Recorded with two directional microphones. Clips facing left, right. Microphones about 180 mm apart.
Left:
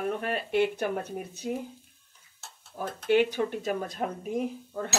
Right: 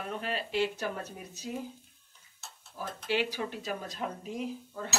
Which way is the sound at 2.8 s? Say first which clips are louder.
Left 8 dB; 55° left (ahead or behind).